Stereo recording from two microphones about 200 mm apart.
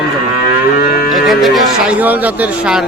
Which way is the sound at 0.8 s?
45° left (ahead or behind).